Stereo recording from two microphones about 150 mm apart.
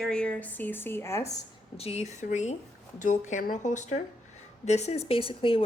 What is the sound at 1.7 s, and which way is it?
Speech, 45° left (ahead or behind).